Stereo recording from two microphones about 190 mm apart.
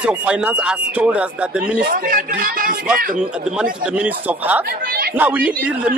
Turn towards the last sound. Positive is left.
turn(degrees=-5)  # may be behind; listen again after turning